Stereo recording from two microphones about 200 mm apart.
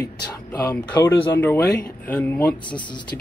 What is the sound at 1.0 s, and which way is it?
Speech, 10° left (ahead or behind).